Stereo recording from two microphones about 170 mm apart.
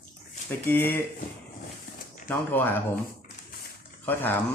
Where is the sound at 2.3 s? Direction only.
10° left (ahead or behind).